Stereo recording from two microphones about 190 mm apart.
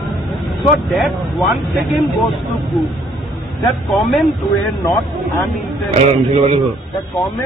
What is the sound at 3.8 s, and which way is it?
Speech, centre (ahead or behind).